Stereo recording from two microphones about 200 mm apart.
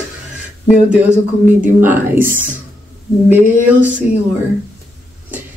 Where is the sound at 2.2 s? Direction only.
45° right (ahead or behind).